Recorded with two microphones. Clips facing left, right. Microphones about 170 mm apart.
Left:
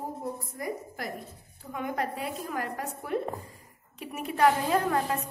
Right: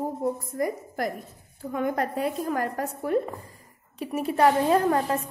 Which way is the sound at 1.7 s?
45° right (ahead or behind).